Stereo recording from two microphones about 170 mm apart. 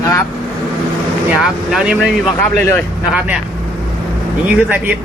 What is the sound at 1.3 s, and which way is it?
Speech, 5° right (ahead or behind).